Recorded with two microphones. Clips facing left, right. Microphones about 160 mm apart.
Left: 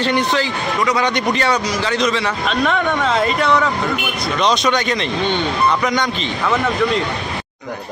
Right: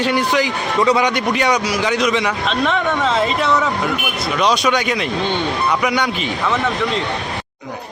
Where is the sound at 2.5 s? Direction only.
Centre (ahead or behind).